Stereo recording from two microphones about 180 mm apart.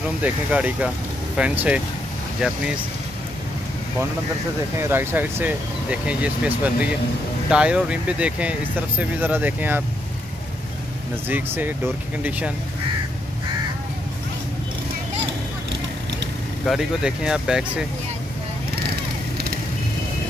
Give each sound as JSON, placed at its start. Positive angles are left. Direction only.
{"t": 0.2, "sound": "speech", "side_deg": -5}
{"t": 4.7, "sound": "speech", "side_deg": -10}
{"t": 11.2, "sound": "speech", "side_deg": -10}
{"t": 16.6, "sound": "speech", "side_deg": -5}